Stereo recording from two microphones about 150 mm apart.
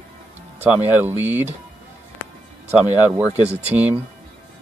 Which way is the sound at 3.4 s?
45° right (ahead or behind).